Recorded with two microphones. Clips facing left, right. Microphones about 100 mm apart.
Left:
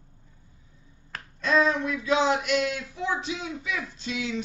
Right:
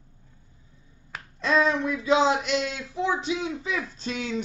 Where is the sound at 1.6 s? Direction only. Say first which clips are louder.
Right 2 dB; 20° right (ahead or behind).